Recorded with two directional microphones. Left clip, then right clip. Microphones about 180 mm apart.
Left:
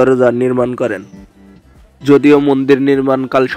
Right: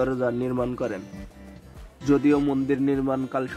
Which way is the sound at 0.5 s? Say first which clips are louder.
Left 12 dB; 30° left (ahead or behind).